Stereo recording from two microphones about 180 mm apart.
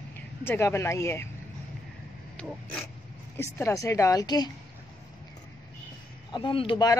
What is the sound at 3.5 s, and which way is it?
Speech, 15° left (ahead or behind).